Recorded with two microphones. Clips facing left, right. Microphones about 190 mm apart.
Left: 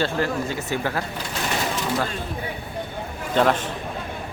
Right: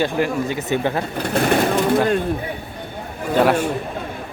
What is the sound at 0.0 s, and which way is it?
Speech, 15° right (ahead or behind).